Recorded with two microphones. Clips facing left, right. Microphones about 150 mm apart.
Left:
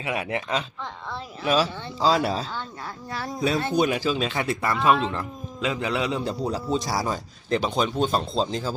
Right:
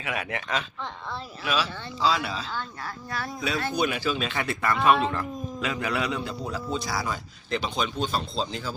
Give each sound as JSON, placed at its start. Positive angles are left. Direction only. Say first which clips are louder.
{"t": 0.0, "sound": "speech", "louder": "left 4 dB", "side_deg": 25}
{"t": 1.5, "sound": "speech", "louder": "left 6 dB", "side_deg": 40}
{"t": 3.6, "sound": "speech", "louder": "left 2 dB", "side_deg": 25}